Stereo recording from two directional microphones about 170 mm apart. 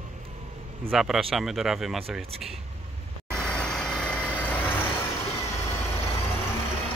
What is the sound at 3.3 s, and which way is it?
Vehicle, 5° left (ahead or behind).